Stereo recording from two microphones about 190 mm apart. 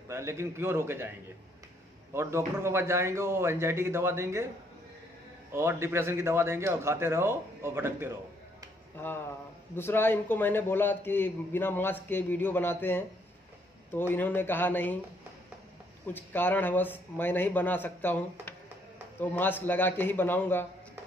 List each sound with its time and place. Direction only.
0.1 s speech: 15° right (ahead or behind)
2.1 s speech: 15° right (ahead or behind)
5.5 s speech: 15° right (ahead or behind)
8.9 s a man's voice: 10° left (ahead or behind)
16.1 s a man's voice: 10° left (ahead or behind)